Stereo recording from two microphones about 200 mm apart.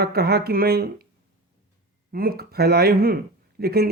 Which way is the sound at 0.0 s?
50° right (ahead or behind).